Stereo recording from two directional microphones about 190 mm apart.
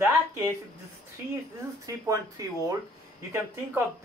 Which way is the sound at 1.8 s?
15° right (ahead or behind).